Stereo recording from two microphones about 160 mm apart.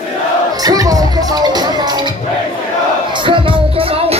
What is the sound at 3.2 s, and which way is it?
Music, 35° right (ahead or behind).